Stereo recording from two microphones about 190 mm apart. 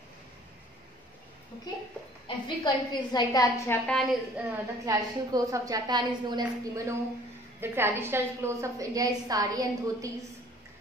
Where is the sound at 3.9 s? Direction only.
Centre (ahead or behind).